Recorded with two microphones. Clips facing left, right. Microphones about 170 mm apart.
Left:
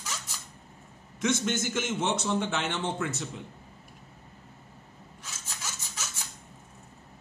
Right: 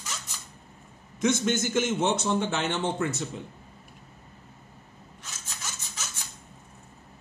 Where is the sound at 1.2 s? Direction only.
40° right (ahead or behind).